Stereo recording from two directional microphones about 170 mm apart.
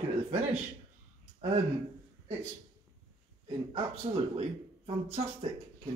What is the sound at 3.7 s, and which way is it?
Speech, 35° right (ahead or behind).